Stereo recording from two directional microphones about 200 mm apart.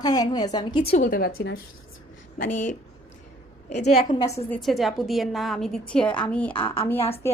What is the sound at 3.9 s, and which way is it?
Speech, 45° left (ahead or behind).